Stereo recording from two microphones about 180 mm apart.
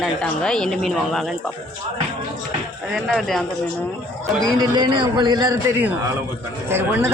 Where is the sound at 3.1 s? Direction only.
Centre (ahead or behind).